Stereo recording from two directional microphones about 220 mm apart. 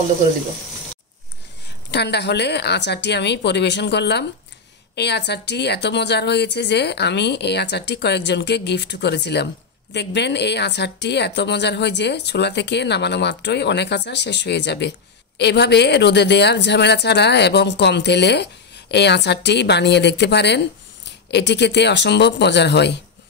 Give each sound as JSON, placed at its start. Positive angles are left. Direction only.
{"t": 1.9, "sound": "a woman's voice", "side_deg": 50}